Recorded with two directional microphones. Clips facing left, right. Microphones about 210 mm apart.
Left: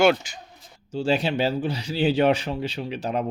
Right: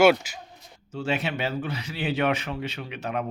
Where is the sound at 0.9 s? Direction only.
30° left (ahead or behind).